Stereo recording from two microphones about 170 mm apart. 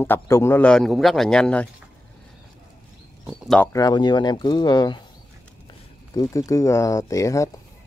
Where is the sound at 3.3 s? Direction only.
Centre (ahead or behind).